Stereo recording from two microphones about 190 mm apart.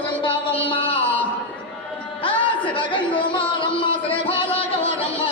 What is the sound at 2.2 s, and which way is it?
Chatter, 25° left (ahead or behind).